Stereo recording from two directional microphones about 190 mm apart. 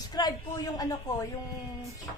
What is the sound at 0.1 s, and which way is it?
Speech, 20° left (ahead or behind).